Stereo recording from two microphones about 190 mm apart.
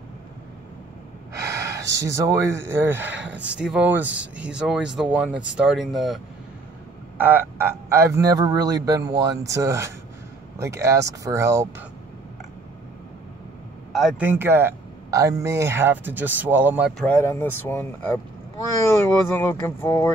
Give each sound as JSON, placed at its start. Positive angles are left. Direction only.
{"t": 1.3, "sound": "speech", "side_deg": -15}
{"t": 7.2, "sound": "speech", "side_deg": -10}
{"t": 13.9, "sound": "speech", "side_deg": -5}
{"t": 17.0, "sound": "speech", "side_deg": 10}
{"t": 19.2, "sound": "speech", "side_deg": 10}